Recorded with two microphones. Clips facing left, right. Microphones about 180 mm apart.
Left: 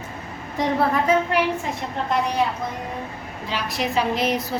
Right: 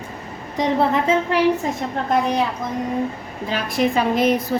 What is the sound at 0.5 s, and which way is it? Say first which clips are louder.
Speech: right 2 dB; 20° right (ahead or behind).